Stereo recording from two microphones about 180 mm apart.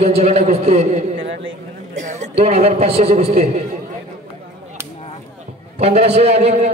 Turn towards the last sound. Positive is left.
turn(degrees=-35)  # may be behind; listen again after turning